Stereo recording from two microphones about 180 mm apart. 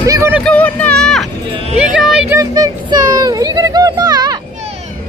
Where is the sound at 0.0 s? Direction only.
15° right (ahead or behind).